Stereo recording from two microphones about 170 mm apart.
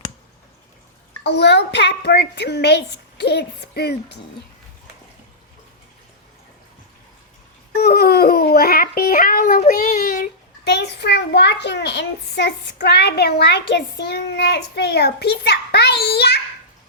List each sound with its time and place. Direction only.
1.2 s a child's voice: 85° left
7.8 s babbling: 65° left (ahead or behind)
9.7 s a child's voice: 55° left (ahead or behind); by 16.4 s 70° left (ahead or behind)